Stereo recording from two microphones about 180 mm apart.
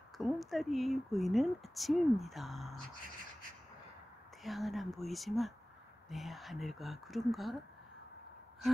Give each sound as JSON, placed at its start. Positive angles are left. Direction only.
{"t": 0.2, "sound": "speech", "side_deg": 0}
{"t": 4.4, "sound": "speech", "side_deg": 0}